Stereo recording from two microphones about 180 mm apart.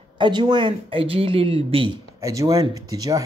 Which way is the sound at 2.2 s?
20° right (ahead or behind).